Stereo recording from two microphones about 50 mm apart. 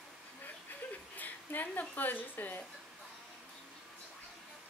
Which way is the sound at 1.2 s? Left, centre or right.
Left.